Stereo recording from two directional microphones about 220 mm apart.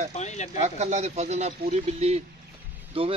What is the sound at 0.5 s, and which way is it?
Speech, 30° right (ahead or behind).